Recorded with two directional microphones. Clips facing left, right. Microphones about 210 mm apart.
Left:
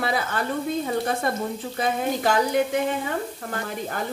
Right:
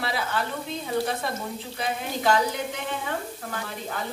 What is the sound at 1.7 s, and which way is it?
Speech, 45° left (ahead or behind).